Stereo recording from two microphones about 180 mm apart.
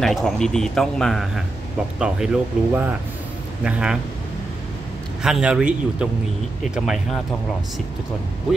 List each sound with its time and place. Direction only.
0.0 s speech: centre (ahead or behind)
5.2 s speech: 5° right (ahead or behind)